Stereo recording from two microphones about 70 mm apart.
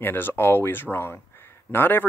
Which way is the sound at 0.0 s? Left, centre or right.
Left.